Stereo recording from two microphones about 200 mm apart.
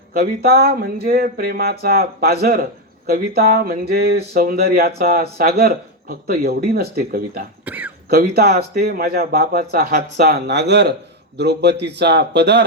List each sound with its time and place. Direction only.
0.1 s speech: 50° right (ahead or behind)
7.6 s a sound: 10° right (ahead or behind)
8.1 s a man's voice: 50° right (ahead or behind)